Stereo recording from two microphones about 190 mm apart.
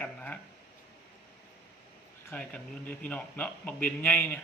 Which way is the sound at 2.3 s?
5° left (ahead or behind).